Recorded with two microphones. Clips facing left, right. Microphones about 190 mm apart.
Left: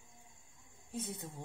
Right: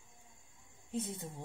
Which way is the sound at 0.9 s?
20° right (ahead or behind).